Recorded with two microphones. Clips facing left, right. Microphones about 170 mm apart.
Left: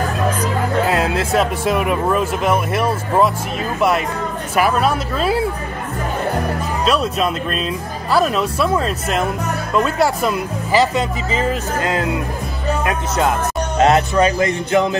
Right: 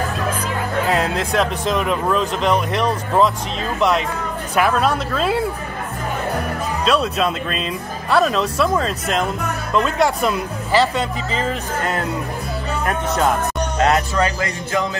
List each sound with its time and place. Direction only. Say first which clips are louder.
0.8 s speech: left 2 dB; 5° left (ahead or behind)
4.6 s speech: left 1 dB; 5° left (ahead or behind)
6.8 s speech: even; centre (ahead or behind)
13.7 s speech: left 4 dB; 25° left (ahead or behind)
14.1 s music: left 5 dB; 20° left (ahead or behind)